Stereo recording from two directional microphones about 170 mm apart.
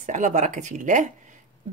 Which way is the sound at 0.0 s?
45° right (ahead or behind).